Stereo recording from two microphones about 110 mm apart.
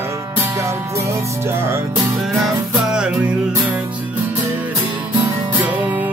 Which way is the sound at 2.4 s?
5° right (ahead or behind).